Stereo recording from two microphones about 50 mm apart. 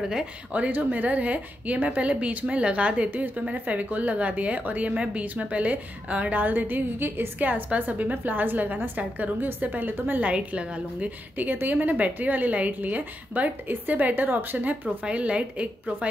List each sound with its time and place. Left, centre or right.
0.5 s a woman's voice: right
10.2 s a woman's voice: right